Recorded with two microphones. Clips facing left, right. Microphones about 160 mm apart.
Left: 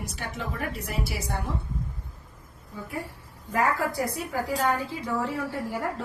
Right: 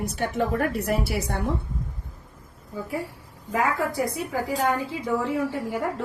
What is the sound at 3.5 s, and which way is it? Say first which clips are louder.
A woman's voice: right 1 dB; 20° right (ahead or behind).